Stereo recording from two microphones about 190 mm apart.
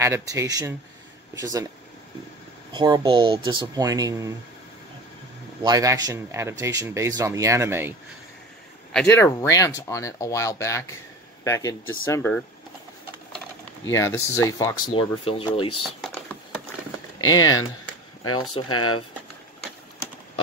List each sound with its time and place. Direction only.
0.0 s speech: 15° right (ahead or behind)
2.7 s speech: 20° right (ahead or behind)
5.6 s speech: 20° right (ahead or behind)
8.9 s speech: 15° left (ahead or behind)
13.8 s speech: 15° left (ahead or behind)
15.2 s speech: 30° left (ahead or behind)
15.8 s typing: centre (ahead or behind)
17.3 s speech: 20° left (ahead or behind)